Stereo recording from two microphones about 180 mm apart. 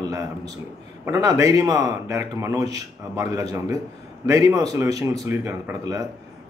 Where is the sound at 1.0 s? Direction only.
15° right (ahead or behind).